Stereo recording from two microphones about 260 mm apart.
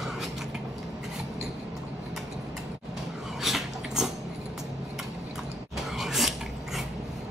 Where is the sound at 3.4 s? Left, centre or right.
Centre.